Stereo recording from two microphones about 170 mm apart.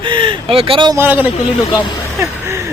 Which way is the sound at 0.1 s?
30° right (ahead or behind).